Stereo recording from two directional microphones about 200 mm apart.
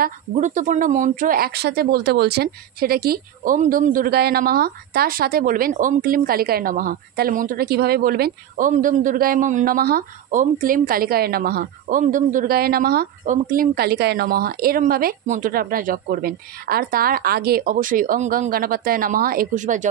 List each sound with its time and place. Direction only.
0.0 s speech: 40° right (ahead or behind)